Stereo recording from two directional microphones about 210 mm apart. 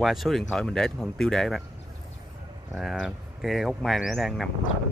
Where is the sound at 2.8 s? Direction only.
Centre (ahead or behind).